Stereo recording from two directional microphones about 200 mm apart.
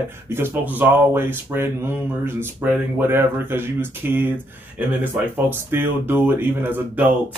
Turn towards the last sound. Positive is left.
turn(degrees=-10)  # may be behind; listen again after turning